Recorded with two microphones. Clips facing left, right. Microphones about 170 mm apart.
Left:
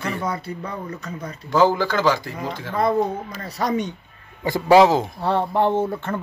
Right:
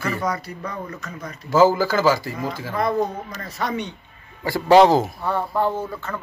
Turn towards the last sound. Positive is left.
turn(degrees=25)  # may be behind; listen again after turning